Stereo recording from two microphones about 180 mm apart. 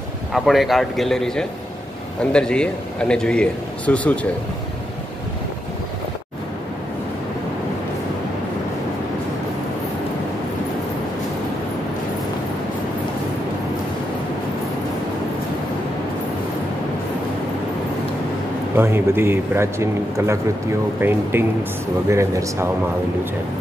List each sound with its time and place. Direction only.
0.3 s a man's voice: centre (ahead or behind)
18.8 s a man's voice: 15° right (ahead or behind)